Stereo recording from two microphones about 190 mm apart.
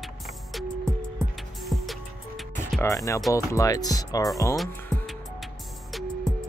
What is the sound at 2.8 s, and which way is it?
Music, 15° left (ahead or behind).